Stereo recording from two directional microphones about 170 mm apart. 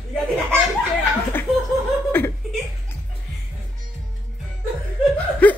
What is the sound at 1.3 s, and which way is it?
Laughter, 10° left (ahead or behind).